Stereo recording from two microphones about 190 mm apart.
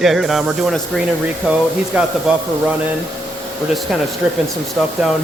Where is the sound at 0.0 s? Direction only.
Centre (ahead or behind).